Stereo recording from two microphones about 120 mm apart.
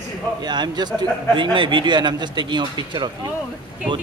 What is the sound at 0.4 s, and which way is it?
A man's voice, 35° right (ahead or behind).